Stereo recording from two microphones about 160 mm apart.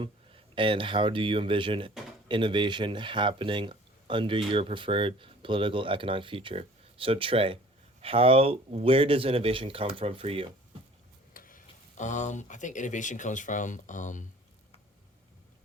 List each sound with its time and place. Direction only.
0.0 s speech: 30° right (ahead or behind)
11.3 s speech: 60° left (ahead or behind)